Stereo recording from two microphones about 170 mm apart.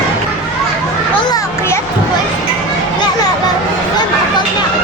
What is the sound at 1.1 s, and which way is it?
Children playing, 25° left (ahead or behind).